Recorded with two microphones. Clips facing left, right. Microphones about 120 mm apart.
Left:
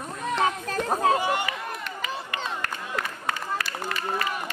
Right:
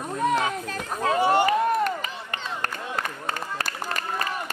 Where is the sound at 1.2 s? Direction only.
40° right (ahead or behind).